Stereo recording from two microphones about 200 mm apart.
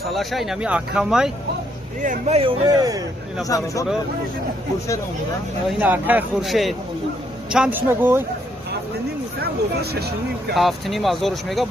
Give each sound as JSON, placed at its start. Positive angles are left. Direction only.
{"t": 0.1, "sound": "speech", "side_deg": 0}
{"t": 2.0, "sound": "speech", "side_deg": -35}
{"t": 2.7, "sound": "speech", "side_deg": -20}
{"t": 3.4, "sound": "speech", "side_deg": 15}
{"t": 5.7, "sound": "speech", "side_deg": -10}
{"t": 9.4, "sound": "speech", "side_deg": -55}
{"t": 10.5, "sound": "speech", "side_deg": 0}